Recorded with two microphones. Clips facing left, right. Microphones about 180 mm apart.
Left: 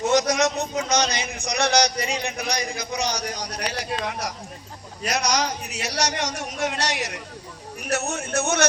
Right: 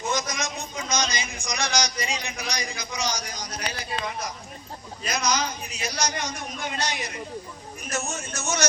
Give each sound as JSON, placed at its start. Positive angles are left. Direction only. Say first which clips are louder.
{"t": 0.0, "sound": "a man's voice", "louder": "left 9 dB", "side_deg": 70}